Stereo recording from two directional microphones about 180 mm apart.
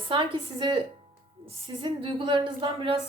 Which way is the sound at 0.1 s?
25° right (ahead or behind).